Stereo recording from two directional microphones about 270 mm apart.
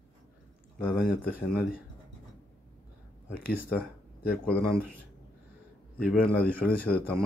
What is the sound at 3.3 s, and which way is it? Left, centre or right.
Speech, left.